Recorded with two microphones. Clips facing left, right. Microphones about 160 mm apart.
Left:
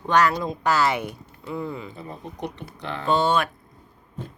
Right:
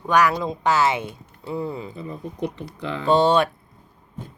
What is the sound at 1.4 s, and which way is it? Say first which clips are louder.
Speech: right 3 dB; 35° right (ahead or behind).